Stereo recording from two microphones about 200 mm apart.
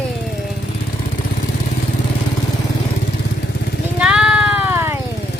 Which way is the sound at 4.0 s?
5° right (ahead or behind).